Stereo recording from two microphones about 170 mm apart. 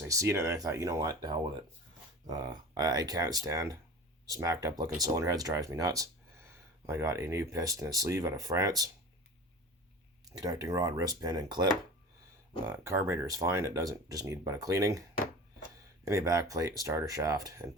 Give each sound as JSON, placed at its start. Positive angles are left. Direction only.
{"t": 0.0, "sound": "speech", "side_deg": -15}
{"t": 10.4, "sound": "speech", "side_deg": -20}
{"t": 12.6, "sound": "speech", "side_deg": -15}
{"t": 16.0, "sound": "speech", "side_deg": -20}